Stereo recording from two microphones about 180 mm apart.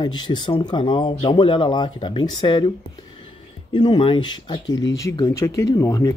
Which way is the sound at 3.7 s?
30° left (ahead or behind).